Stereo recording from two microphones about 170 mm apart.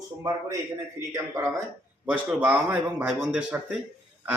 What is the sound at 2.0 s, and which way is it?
Speech, 5° right (ahead or behind).